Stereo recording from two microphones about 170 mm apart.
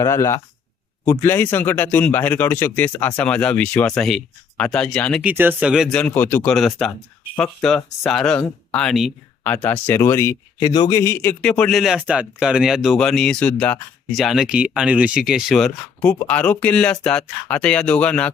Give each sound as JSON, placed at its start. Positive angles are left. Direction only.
{"t": 0.0, "sound": "speech", "side_deg": 15}
{"t": 5.2, "sound": "speech", "side_deg": -10}